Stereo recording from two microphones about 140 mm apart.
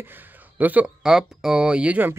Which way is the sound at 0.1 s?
10° right (ahead or behind).